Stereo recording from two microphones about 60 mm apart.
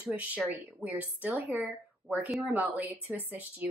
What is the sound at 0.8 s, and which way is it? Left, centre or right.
Speech, centre.